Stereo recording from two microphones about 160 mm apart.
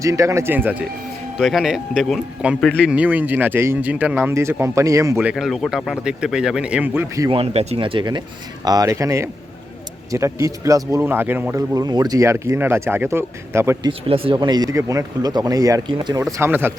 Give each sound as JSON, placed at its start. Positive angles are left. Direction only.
{"t": 0.0, "sound": "speech", "side_deg": -20}
{"t": 1.4, "sound": "speech", "side_deg": 0}
{"t": 2.9, "sound": "speech", "side_deg": -10}
{"t": 5.2, "sound": "speech", "side_deg": -5}
{"t": 7.3, "sound": "speech", "side_deg": -40}
{"t": 14.1, "sound": "speech", "side_deg": -35}
{"t": 16.4, "sound": "speech", "side_deg": -15}